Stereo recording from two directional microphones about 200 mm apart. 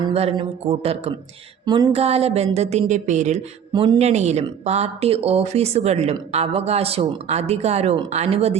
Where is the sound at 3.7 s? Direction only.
25° right (ahead or behind).